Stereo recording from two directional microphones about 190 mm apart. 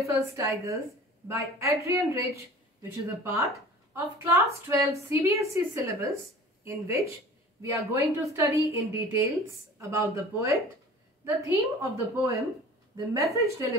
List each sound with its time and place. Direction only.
0.0 s a woman's voice: 15° right (ahead or behind)